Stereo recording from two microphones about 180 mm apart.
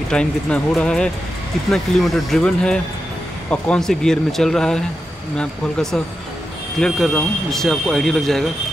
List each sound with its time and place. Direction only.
0.1 s speech: 5° left (ahead or behind)